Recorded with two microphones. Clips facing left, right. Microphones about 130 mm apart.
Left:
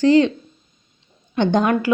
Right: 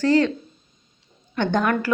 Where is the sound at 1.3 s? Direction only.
20° left (ahead or behind).